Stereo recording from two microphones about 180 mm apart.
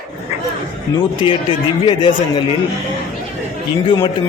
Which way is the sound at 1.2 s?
30° left (ahead or behind).